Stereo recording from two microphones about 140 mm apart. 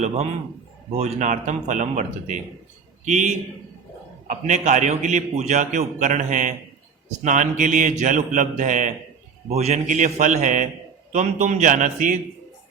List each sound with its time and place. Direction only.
0.9 s a man's voice: 55° right (ahead or behind)
9.5 s a man's voice: 50° right (ahead or behind); by 12.2 s 70° right (ahead or behind)